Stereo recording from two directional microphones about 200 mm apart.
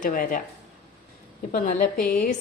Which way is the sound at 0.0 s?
45° left (ahead or behind).